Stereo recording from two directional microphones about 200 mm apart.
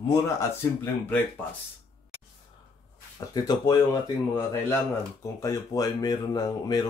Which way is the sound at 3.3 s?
20° left (ahead or behind).